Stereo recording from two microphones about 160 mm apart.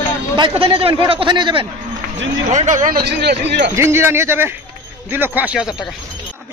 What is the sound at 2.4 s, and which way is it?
Speech, 50° right (ahead or behind).